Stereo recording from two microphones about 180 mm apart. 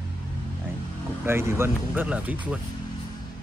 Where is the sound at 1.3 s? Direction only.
15° right (ahead or behind).